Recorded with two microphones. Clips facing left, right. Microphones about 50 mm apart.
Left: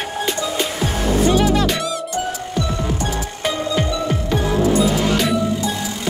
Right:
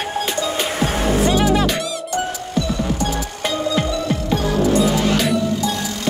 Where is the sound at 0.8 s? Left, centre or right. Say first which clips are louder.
Right 2 dB; right.